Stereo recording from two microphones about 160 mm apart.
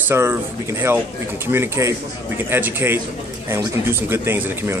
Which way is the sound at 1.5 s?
15° right (ahead or behind).